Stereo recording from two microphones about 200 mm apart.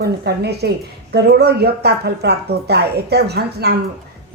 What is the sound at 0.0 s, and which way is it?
Speech, 55° right (ahead or behind).